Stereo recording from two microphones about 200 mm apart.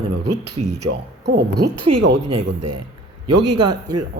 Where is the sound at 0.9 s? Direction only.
55° right (ahead or behind).